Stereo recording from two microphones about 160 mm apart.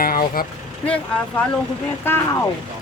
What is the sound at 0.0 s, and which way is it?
Vehicle, 65° left (ahead or behind).